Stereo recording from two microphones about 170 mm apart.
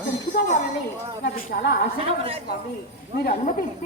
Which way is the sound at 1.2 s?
75° left (ahead or behind).